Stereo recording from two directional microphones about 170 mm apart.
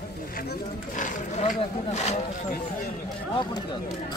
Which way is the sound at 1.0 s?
45° left (ahead or behind).